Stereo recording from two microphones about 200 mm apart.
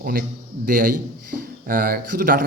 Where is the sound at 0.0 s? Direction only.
45° right (ahead or behind).